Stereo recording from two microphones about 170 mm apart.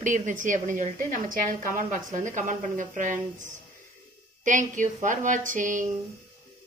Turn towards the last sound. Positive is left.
turn(degrees=-50)  # may be behind; listen again after turning